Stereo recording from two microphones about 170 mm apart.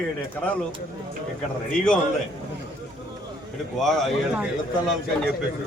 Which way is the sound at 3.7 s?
Centre (ahead or behind).